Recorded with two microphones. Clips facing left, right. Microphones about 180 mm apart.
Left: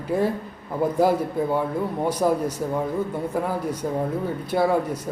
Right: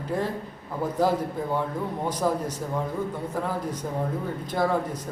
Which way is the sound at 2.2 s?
10° left (ahead or behind).